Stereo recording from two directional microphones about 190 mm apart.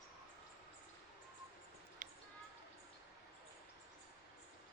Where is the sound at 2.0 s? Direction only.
45° right (ahead or behind).